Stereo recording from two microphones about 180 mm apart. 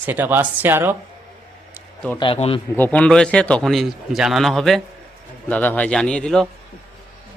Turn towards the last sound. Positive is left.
turn(degrees=5)  # may be behind; listen again after turning